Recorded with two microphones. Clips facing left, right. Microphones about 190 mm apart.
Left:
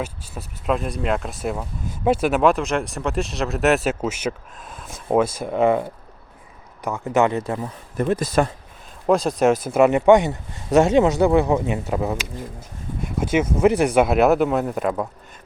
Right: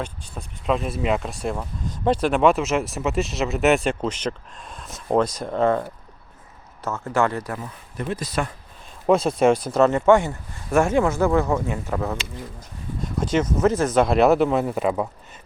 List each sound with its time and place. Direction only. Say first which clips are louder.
0.0 s speech: left 2 dB; 5° left (ahead or behind)
6.8 s speech: left 3 dB; 15° left (ahead or behind)
7.9 s speech: left 7 dB; 50° left (ahead or behind)
9.0 s speech: even; centre (ahead or behind)